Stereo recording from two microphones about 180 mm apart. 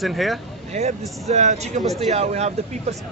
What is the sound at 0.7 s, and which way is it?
Speech, 35° right (ahead or behind).